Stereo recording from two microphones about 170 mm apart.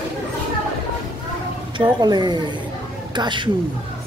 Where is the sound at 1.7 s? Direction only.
25° right (ahead or behind).